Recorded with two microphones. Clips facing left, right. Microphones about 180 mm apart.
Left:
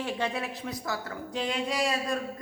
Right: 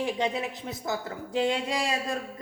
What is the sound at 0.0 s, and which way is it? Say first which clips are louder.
Speech: right 3 dB; 15° right (ahead or behind).